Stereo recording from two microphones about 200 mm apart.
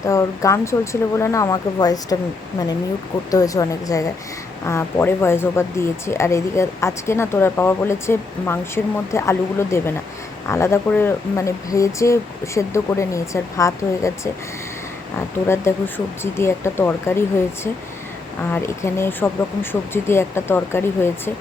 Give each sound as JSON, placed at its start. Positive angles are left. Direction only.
{"t": 0.0, "sound": "speech", "side_deg": 15}
{"t": 3.3, "sound": "speech", "side_deg": 15}
{"t": 15.7, "sound": "speech", "side_deg": 10}